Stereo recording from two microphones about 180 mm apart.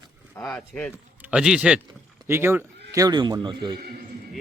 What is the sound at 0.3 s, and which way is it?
Speech, 5° left (ahead or behind).